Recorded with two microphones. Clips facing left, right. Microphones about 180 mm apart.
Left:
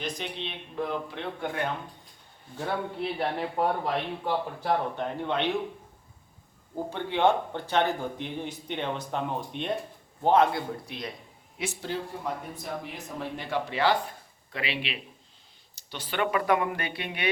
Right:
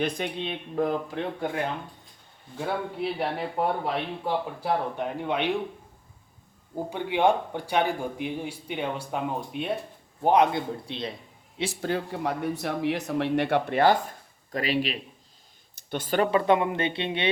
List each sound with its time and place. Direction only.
0.0 s speech: 50° right (ahead or behind)
2.6 s a man's voice: 5° right (ahead or behind)
6.7 s a man's voice: 15° right (ahead or behind)
10.2 s speech: 15° right (ahead or behind)
11.8 s speech: 60° right (ahead or behind)
14.5 s speech: 40° right (ahead or behind)
15.7 s speech: 50° right (ahead or behind)
16.3 s speech: 25° right (ahead or behind)